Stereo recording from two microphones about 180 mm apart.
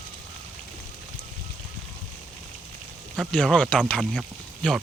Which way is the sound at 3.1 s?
5° left (ahead or behind).